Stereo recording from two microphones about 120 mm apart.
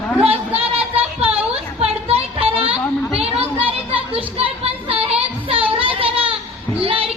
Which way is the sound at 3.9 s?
50° right (ahead or behind).